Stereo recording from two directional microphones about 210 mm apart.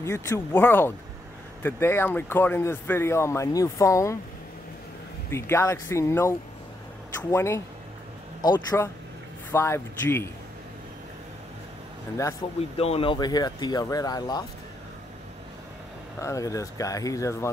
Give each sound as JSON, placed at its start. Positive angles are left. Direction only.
{"t": 0.0, "sound": "speech", "side_deg": 15}
{"t": 5.3, "sound": "speech", "side_deg": 10}
{"t": 12.4, "sound": "speech", "side_deg": 20}
{"t": 16.2, "sound": "speech", "side_deg": 15}